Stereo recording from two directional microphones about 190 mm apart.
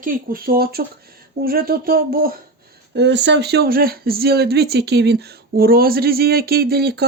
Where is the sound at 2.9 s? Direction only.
65° right (ahead or behind).